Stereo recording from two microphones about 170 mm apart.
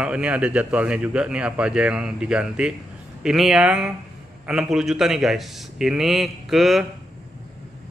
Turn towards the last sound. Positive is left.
turn(degrees=0)  # may be behind; listen again after turning